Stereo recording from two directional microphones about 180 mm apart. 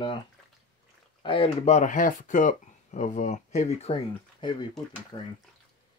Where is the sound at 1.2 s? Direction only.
30° left (ahead or behind).